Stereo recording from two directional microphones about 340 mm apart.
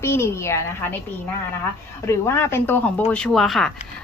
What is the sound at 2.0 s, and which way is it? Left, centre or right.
Speech, centre.